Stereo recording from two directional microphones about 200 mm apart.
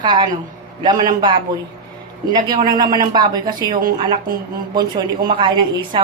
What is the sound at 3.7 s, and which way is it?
Speech, 45° right (ahead or behind).